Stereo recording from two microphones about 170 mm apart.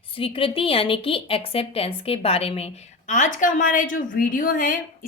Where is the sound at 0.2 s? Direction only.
30° left (ahead or behind).